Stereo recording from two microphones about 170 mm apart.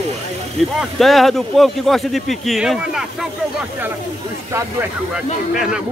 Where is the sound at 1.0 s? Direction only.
Centre (ahead or behind).